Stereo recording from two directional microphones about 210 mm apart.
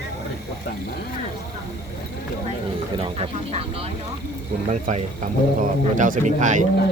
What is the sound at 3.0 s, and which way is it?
Speech, 30° right (ahead or behind).